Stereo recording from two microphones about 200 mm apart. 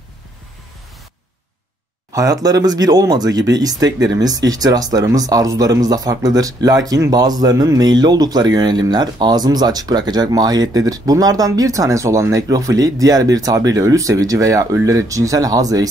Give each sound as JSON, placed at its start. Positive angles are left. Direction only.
{"t": 2.1, "sound": "speech", "side_deg": -15}